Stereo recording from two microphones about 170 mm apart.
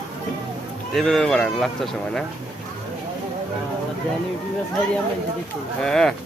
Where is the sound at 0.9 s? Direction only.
Centre (ahead or behind).